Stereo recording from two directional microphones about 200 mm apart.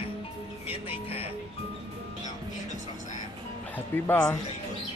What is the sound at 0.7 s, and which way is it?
Music, 30° left (ahead or behind).